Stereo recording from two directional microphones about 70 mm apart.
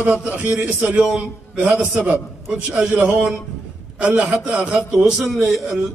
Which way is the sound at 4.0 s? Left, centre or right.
Centre.